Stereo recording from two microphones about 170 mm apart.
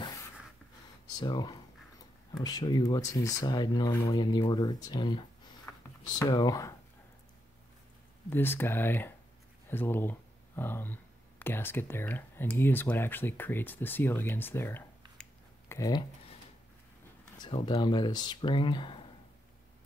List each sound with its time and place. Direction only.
1.1 s speech: 25° left (ahead or behind)
6.2 s speech: 20° left (ahead or behind)
8.3 s speech: 10° left (ahead or behind)
17.4 s speech: 25° left (ahead or behind)